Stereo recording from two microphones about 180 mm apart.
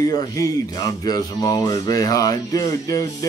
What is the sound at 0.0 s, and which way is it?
Speech, 20° left (ahead or behind).